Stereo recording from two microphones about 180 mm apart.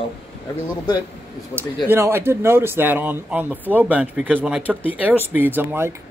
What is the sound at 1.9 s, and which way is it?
Speech, 15° right (ahead or behind).